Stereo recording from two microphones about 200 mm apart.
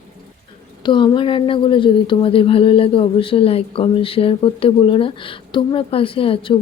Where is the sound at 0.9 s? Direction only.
25° left (ahead or behind).